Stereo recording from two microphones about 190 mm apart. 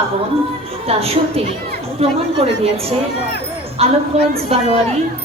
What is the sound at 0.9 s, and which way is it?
A woman's voice, 30° right (ahead or behind).